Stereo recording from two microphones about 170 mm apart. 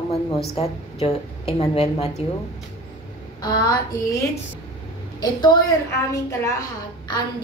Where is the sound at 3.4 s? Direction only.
25° left (ahead or behind).